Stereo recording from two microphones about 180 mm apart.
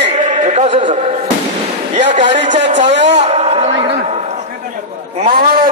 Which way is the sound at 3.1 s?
35° right (ahead or behind).